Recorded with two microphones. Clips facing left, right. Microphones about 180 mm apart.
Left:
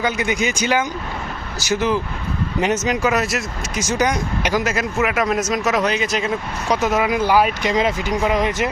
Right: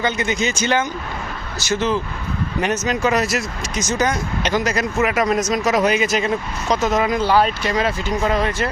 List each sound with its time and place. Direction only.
0.0 s speech: 10° left (ahead or behind)
3.1 s speech: centre (ahead or behind)
3.8 s speech: 15° left (ahead or behind); by 6.3 s centre (ahead or behind)
6.7 s speech: 10° left (ahead or behind)